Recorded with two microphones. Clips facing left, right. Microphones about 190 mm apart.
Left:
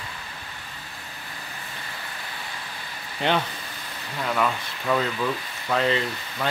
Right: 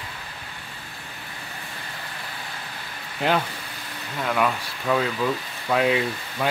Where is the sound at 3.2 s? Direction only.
5° right (ahead or behind).